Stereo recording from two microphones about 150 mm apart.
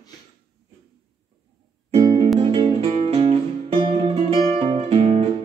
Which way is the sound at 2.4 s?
35° right (ahead or behind).